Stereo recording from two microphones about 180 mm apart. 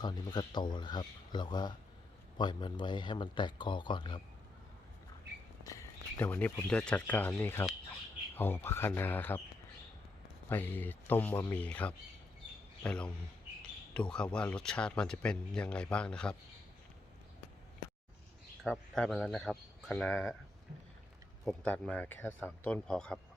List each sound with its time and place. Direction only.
0.0 s speech: 25° left (ahead or behind)
5.6 s speech: 15° left (ahead or behind)
10.5 s speech: 10° left (ahead or behind)
18.6 s speech: 5° left (ahead or behind)
21.4 s speech: 5° left (ahead or behind)